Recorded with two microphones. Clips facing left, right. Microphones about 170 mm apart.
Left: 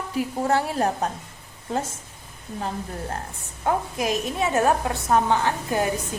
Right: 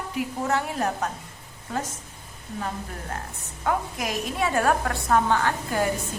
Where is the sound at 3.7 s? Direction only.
25° left (ahead or behind).